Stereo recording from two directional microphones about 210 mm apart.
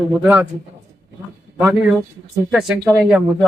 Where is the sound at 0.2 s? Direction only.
5° right (ahead or behind).